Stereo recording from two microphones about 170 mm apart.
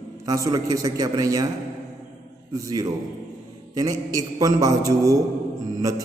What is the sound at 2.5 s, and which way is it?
A man's voice, 20° right (ahead or behind).